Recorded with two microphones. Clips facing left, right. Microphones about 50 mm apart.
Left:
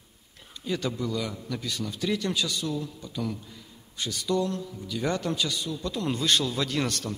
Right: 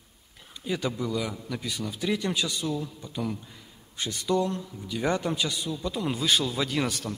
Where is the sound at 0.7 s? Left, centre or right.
Centre.